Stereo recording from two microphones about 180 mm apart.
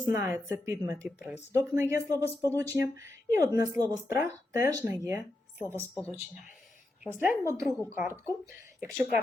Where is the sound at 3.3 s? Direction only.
20° right (ahead or behind).